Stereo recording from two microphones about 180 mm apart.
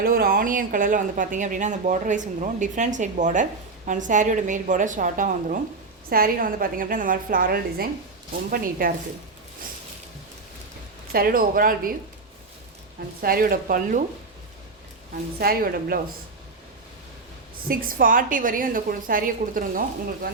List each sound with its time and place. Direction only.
0.0 s speech: 55° right (ahead or behind)
11.1 s speech: 55° right (ahead or behind)
13.2 s speech: 55° right (ahead or behind)
15.4 s speech: 55° right (ahead or behind)
17.7 s speech: 50° right (ahead or behind)